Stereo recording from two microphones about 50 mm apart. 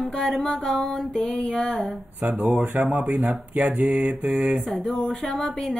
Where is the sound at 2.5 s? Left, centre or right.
Right.